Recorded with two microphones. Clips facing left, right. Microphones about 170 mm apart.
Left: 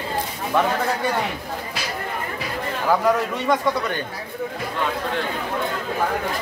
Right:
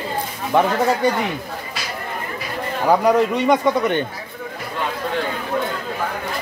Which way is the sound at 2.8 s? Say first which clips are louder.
Right 4 dB; 20° right (ahead or behind).